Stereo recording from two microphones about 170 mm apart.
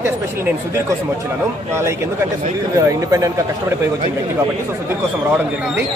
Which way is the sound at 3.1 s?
20° right (ahead or behind).